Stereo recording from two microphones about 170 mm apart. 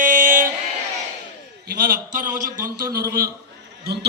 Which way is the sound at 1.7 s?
60° right (ahead or behind).